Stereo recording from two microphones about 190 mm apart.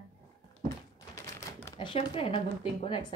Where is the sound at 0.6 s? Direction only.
15° left (ahead or behind).